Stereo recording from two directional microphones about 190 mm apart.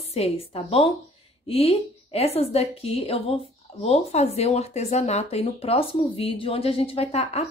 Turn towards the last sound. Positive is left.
turn(degrees=35)  # may be behind; listen again after turning